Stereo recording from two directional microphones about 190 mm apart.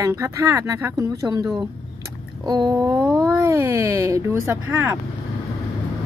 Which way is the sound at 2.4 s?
20° right (ahead or behind).